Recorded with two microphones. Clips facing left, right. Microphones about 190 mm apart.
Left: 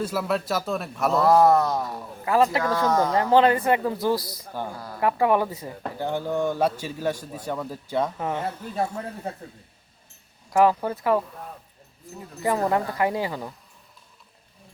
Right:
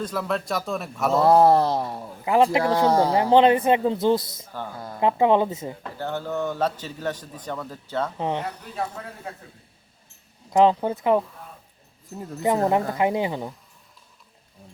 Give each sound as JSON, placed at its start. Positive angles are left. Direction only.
{"t": 0.0, "sound": "a man's voice", "side_deg": 5}
{"t": 1.2, "sound": "speech", "side_deg": -30}
{"t": 3.2, "sound": "speech", "side_deg": -20}
{"t": 6.0, "sound": "a man's voice", "side_deg": 15}
{"t": 8.2, "sound": "speech", "side_deg": -20}
{"t": 10.5, "sound": "speech", "side_deg": -20}
{"t": 12.4, "sound": "speech", "side_deg": -20}